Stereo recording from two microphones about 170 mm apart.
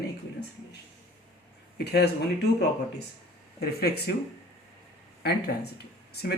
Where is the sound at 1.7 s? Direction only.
70° left (ahead or behind).